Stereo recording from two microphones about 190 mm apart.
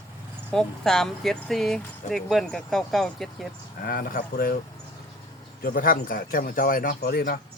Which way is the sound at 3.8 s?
45° left (ahead or behind).